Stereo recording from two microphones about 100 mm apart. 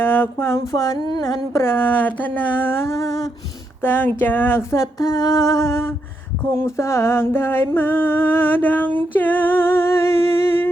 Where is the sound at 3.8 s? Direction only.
20° left (ahead or behind).